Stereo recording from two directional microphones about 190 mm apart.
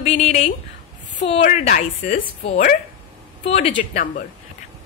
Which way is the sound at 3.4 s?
35° left (ahead or behind).